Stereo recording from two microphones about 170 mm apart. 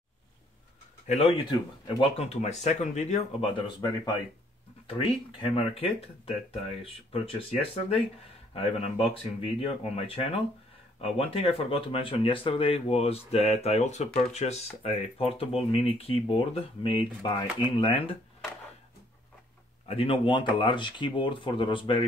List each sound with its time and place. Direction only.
1.0 s speech: 40° left (ahead or behind)
8.5 s speech: 35° left (ahead or behind)
19.9 s speech: 35° left (ahead or behind)